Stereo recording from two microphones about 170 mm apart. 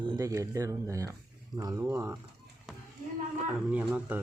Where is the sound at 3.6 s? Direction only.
10° right (ahead or behind).